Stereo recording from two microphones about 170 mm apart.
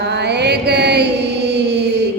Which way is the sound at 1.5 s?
85° right.